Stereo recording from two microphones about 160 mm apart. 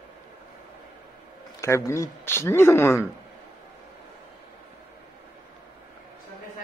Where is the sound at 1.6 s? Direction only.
20° left (ahead or behind).